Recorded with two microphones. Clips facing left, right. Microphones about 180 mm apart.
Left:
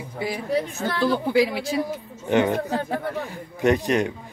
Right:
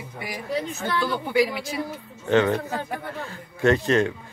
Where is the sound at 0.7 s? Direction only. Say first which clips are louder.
Left 3 dB; 30° left (ahead or behind).